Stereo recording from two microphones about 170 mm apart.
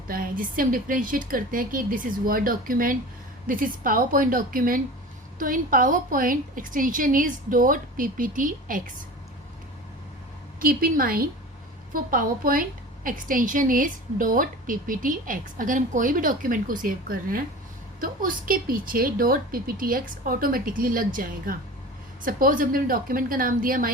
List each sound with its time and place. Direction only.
0.1 s a woman's voice: 55° right (ahead or behind)
10.6 s a woman's voice: 60° right (ahead or behind)